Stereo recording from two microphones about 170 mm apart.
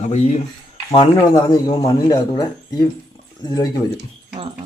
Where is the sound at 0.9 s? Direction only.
20° left (ahead or behind).